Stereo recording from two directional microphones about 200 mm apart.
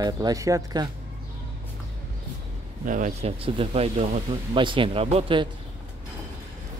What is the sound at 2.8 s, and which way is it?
Speech, 40° right (ahead or behind).